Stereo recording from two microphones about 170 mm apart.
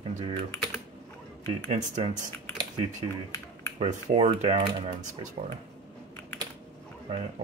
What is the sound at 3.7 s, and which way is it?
Speech, 40° right (ahead or behind).